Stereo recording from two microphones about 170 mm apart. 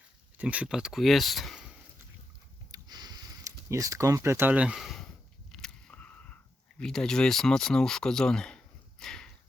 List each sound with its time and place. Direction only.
0.3 s speech: 10° right (ahead or behind)
2.7 s a sound: 25° right (ahead or behind); by 5.0 s centre (ahead or behind)
5.5 s biting: 5° left (ahead or behind)
6.7 s speech: 5° left (ahead or behind)